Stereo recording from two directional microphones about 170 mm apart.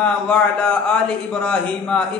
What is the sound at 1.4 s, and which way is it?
Speech, 5° left (ahead or behind).